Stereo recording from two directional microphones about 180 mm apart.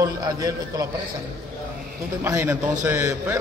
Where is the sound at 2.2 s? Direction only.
15° right (ahead or behind).